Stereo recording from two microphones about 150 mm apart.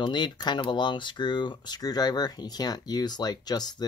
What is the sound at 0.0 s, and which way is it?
Speech, 30° left (ahead or behind).